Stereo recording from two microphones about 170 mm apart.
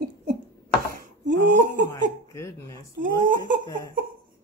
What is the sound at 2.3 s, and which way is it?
Speech, 15° left (ahead or behind).